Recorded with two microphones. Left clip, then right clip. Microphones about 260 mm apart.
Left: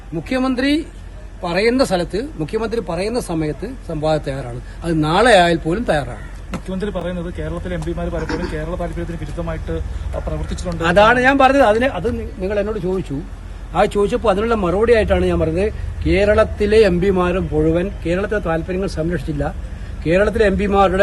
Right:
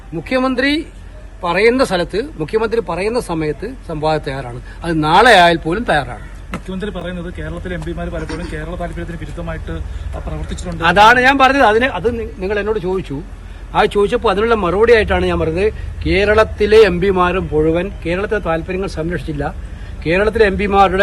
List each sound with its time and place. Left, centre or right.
0.3 s a man's voice: centre
6.7 s speech: left
10.8 s a man's voice: centre